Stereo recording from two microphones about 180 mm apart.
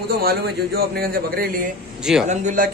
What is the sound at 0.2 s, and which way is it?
A man's voice, 55° right (ahead or behind).